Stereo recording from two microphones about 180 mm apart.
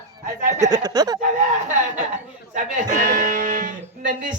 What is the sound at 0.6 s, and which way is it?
Speech, 20° right (ahead or behind).